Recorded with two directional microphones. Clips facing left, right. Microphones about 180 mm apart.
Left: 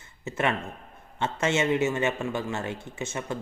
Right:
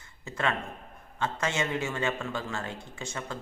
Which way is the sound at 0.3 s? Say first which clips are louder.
Left 3 dB; 20° left (ahead or behind).